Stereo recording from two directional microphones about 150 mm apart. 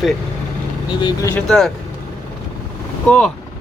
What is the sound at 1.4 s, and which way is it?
Speech, 5° left (ahead or behind).